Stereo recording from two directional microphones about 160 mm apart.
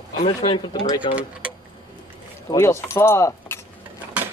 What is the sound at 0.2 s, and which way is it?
Speech, 30° left (ahead or behind).